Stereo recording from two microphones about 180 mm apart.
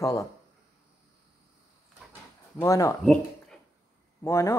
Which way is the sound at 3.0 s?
5° left (ahead or behind).